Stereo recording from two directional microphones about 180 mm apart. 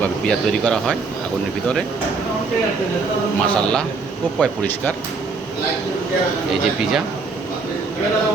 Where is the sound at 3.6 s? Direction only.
5° left (ahead or behind).